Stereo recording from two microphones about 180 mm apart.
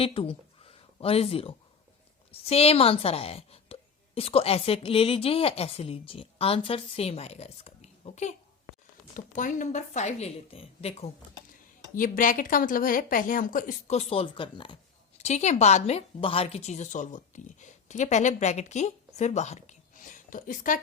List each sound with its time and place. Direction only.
0.0 s speech: 30° left (ahead or behind)
11.9 s a woman's voice: 50° left (ahead or behind); by 14.8 s 25° left (ahead or behind)
15.2 s a woman's voice: 40° left (ahead or behind)